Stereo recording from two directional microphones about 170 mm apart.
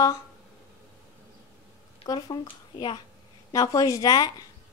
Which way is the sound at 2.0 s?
25° left (ahead or behind).